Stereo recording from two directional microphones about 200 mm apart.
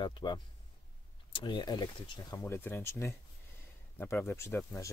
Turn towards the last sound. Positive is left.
turn(degrees=15)  # may be behind; listen again after turning